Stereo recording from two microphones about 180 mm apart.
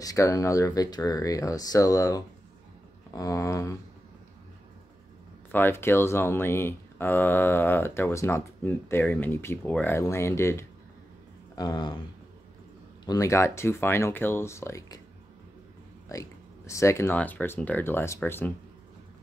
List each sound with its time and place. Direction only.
0.0 s speech: 20° left (ahead or behind)
5.5 s speech: 10° left (ahead or behind)
13.0 s speech: 20° left (ahead or behind)
16.1 s speech: 20° left (ahead or behind)